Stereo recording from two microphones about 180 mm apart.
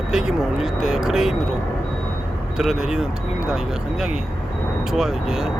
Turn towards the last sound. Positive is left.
turn(degrees=0)  # may be behind; listen again after turning